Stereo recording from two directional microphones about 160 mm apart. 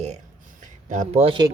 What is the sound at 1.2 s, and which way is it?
Speech, 30° right (ahead or behind).